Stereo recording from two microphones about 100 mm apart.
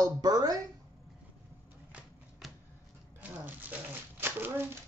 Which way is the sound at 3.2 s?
20° right (ahead or behind).